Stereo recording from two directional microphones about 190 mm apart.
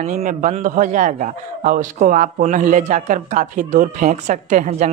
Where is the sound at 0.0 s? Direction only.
45° right (ahead or behind).